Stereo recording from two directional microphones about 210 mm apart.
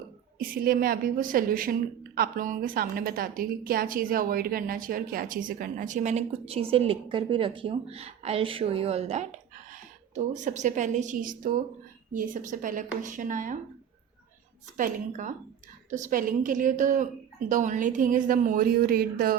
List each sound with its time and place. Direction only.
0.3 s a woman's voice: 45° right (ahead or behind)
14.8 s a woman's voice: 35° right (ahead or behind)